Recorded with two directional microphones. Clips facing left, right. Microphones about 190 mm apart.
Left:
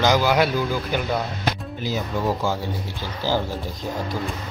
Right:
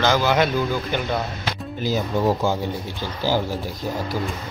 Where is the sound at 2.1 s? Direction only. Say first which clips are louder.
Right 4 dB; 25° right (ahead or behind).